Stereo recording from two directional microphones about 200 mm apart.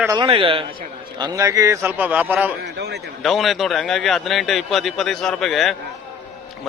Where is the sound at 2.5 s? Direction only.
55° right (ahead or behind).